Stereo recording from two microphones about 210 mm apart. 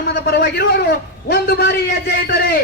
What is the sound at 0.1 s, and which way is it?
A man's voice, 50° left (ahead or behind).